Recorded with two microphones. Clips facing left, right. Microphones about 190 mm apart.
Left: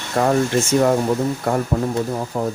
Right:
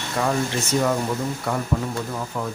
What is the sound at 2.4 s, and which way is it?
Speech, 35° left (ahead or behind).